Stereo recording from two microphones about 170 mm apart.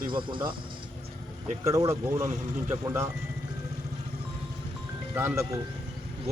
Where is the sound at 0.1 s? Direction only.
30° right (ahead or behind).